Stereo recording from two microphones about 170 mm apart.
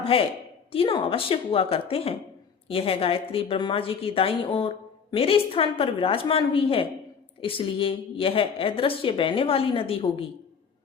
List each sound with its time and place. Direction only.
0.1 s a woman's voice: 35° left (ahead or behind)